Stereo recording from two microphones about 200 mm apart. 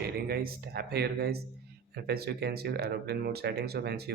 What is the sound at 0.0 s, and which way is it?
Speech, 50° right (ahead or behind).